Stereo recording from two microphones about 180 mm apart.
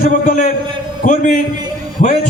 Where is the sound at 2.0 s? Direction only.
40° left (ahead or behind).